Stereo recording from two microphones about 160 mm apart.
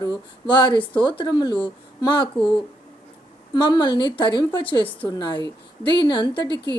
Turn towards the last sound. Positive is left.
turn(degrees=30)  # may be behind; listen again after turning